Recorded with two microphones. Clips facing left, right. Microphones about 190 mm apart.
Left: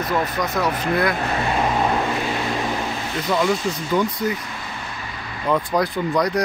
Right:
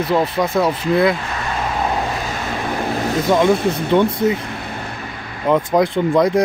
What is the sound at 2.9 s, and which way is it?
Vehicle, 45° right (ahead or behind).